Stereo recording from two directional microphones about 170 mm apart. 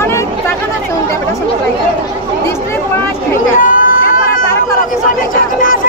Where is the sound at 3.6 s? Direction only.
55° left (ahead or behind).